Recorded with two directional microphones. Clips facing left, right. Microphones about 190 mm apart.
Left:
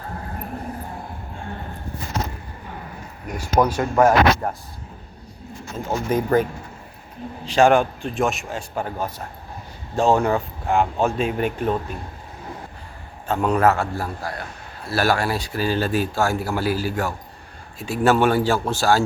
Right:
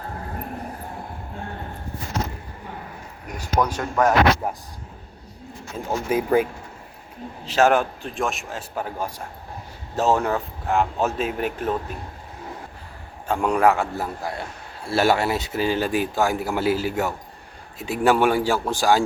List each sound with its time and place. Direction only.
3.3 s speech: 10° left (ahead or behind)
4.4 s a man's voice: 10° right (ahead or behind)
5.7 s a man's voice: 5° right (ahead or behind)
13.2 s a man's voice: 10° right (ahead or behind)